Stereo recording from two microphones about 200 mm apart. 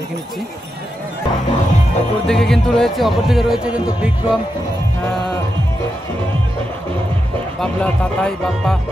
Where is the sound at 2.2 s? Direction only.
Centre (ahead or behind).